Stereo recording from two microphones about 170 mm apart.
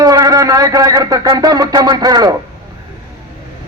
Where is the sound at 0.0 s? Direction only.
20° right (ahead or behind).